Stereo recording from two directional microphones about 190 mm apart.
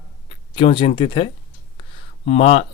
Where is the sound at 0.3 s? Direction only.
25° left (ahead or behind).